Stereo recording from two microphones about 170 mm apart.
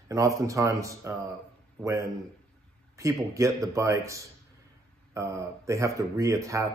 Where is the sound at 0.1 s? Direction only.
20° right (ahead or behind).